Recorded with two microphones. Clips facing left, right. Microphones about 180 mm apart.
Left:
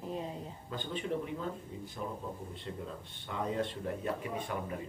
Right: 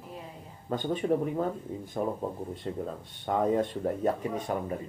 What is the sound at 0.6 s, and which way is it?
Speech, 50° right (ahead or behind).